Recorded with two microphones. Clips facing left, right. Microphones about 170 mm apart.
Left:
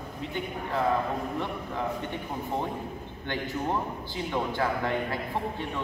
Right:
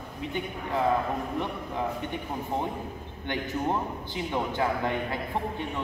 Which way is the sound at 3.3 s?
15° right (ahead or behind).